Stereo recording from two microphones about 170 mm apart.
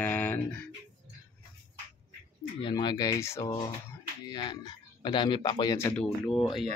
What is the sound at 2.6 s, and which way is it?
Speech, 25° left (ahead or behind).